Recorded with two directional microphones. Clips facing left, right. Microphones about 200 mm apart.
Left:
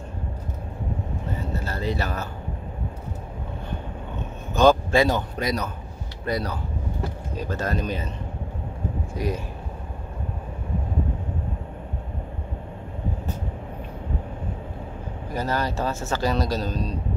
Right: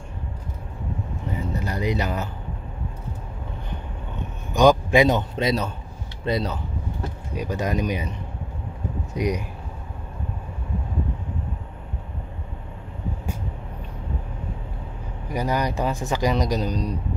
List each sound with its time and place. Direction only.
1.4 s a sound: 15° right (ahead or behind)
4.6 s a man's voice: 15° right (ahead or behind)
9.1 s speech: 20° right (ahead or behind)
15.3 s a man's voice: 15° right (ahead or behind)